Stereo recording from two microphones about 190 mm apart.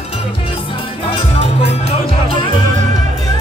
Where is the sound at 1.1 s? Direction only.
35° left (ahead or behind).